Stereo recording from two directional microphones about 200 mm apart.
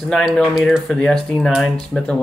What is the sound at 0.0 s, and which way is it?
Speech, centre (ahead or behind).